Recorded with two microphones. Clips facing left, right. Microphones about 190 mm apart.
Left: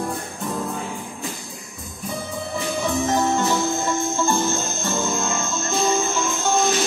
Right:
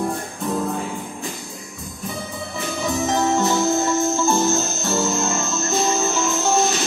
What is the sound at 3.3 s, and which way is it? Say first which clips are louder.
Music: right 3 dB; centre (ahead or behind).